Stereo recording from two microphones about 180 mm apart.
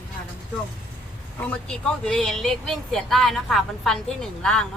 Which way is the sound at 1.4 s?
5° left (ahead or behind).